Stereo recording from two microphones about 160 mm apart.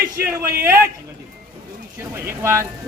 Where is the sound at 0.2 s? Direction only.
15° right (ahead or behind).